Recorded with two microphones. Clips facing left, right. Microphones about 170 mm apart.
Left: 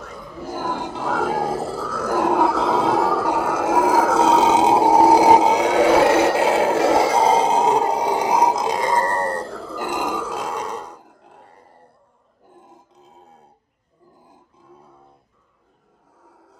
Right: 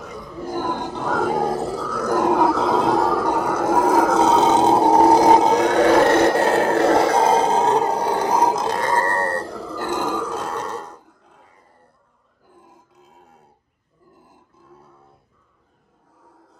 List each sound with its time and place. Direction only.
0.0 s grunt: centre (ahead or behind)
9.8 s burping: 15° left (ahead or behind)
12.6 s grunt: 20° left (ahead or behind)